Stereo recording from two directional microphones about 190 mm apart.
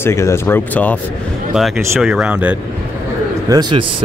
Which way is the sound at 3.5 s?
20° right (ahead or behind).